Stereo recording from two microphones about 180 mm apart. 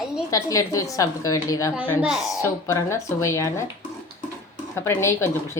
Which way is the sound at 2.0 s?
5° right (ahead or behind).